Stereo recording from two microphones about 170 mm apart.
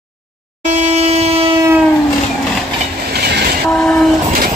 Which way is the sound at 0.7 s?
40° right (ahead or behind).